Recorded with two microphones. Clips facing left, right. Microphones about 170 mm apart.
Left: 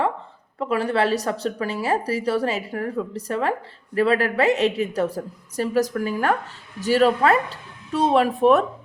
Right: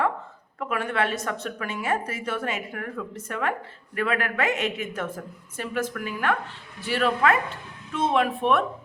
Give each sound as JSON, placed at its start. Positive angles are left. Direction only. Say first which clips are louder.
{"t": 0.6, "sound": "a woman's voice", "louder": "left 5 dB", "side_deg": 30}